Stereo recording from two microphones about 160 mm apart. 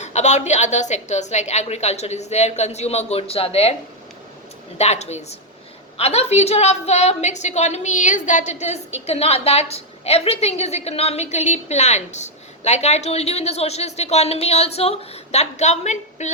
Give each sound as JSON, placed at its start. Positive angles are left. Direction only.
{"t": 0.0, "sound": "a woman's voice", "side_deg": 45}
{"t": 4.8, "sound": "a woman's voice", "side_deg": 45}